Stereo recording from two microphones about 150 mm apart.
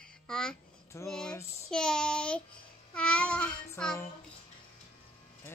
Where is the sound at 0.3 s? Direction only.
5° left (ahead or behind).